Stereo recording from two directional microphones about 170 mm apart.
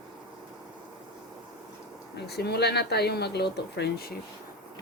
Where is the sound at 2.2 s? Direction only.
70° left (ahead or behind).